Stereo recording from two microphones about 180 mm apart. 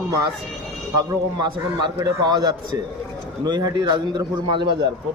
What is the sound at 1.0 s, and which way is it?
A man's voice, 25° right (ahead or behind).